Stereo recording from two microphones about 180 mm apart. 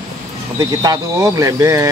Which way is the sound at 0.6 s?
20° right (ahead or behind).